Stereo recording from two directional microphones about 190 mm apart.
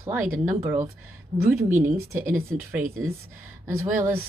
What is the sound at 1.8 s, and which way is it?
Speech, 15° right (ahead or behind).